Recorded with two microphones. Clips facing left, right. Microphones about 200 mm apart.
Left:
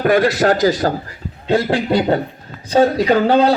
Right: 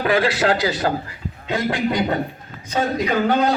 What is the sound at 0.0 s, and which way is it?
A man's voice, 45° left (ahead or behind).